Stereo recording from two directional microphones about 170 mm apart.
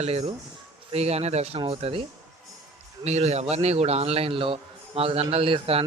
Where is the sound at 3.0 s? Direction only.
40° right (ahead or behind).